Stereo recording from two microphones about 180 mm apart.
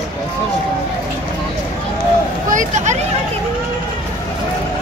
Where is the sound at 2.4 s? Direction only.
45° right (ahead or behind).